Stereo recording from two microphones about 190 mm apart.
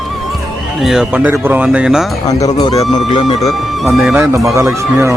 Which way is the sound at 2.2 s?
20° left (ahead or behind).